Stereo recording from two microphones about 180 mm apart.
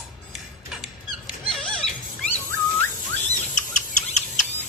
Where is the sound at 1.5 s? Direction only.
5° left (ahead or behind).